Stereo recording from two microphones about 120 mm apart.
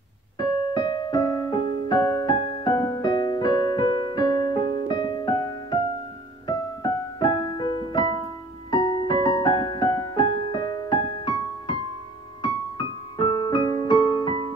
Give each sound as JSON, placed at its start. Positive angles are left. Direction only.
{"t": 0.7, "sound": "music", "side_deg": 35}
{"t": 12.4, "sound": "electric piano", "side_deg": 35}